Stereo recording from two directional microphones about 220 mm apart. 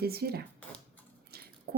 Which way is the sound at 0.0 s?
45° right (ahead or behind).